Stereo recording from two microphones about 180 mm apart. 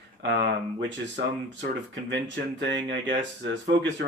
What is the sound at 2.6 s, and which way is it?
Speech, 75° right (ahead or behind).